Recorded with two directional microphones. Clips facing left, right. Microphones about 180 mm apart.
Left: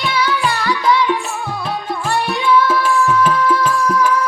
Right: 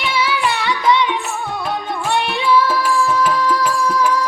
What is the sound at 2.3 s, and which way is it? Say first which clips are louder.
Music: left 2 dB; 30° right (ahead or behind).